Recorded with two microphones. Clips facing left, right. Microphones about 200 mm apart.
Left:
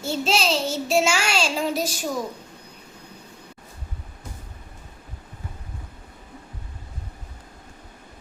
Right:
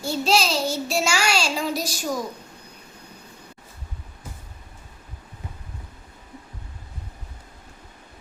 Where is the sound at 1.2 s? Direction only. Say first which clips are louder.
Even; 40° right (ahead or behind).